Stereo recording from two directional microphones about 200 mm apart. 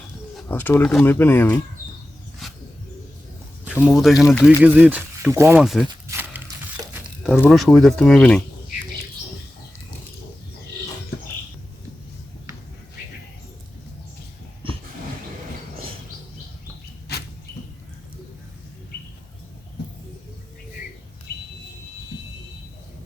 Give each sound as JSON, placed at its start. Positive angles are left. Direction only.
{"t": 0.4, "sound": "speech", "side_deg": 10}
{"t": 2.4, "sound": "bird", "side_deg": 0}
{"t": 3.6, "sound": "speech", "side_deg": -10}
{"t": 5.6, "sound": "speech", "side_deg": 0}
{"t": 5.9, "sound": "crumpling", "side_deg": -10}
{"t": 7.3, "sound": "speech", "side_deg": 5}
{"t": 17.1, "sound": "a sound", "side_deg": 55}